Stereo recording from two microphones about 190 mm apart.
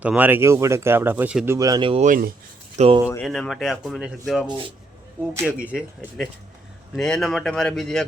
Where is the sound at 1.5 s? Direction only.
20° right (ahead or behind).